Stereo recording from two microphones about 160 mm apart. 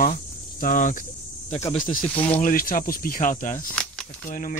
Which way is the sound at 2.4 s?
60° left (ahead or behind).